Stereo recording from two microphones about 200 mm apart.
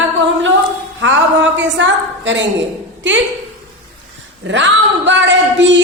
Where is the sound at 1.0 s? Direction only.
70° right (ahead or behind).